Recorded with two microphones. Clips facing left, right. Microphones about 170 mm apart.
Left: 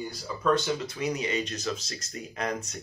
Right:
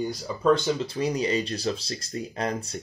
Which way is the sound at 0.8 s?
30° right (ahead or behind).